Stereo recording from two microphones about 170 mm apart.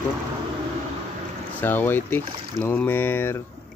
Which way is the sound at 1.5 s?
10° left (ahead or behind).